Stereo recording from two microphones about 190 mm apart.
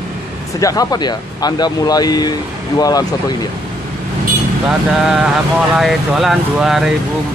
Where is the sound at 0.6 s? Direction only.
20° left (ahead or behind).